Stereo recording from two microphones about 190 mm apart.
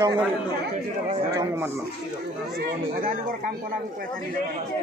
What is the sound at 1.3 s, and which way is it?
Speech, 15° right (ahead or behind).